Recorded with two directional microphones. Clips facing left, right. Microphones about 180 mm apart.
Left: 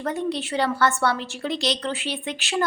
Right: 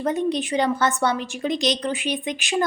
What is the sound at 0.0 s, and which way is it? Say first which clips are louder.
A woman's voice: right 4 dB; 20° right (ahead or behind).